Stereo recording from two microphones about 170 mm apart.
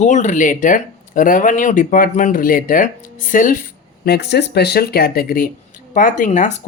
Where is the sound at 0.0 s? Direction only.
45° left (ahead or behind).